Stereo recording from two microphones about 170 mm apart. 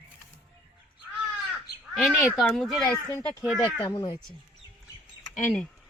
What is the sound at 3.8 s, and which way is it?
Speech, 25° left (ahead or behind).